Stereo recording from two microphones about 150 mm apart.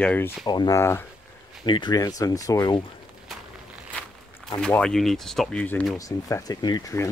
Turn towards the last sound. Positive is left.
turn(degrees=20)  # may be behind; listen again after turning